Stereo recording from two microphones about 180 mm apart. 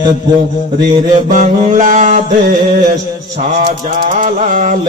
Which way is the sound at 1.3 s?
45° right (ahead or behind).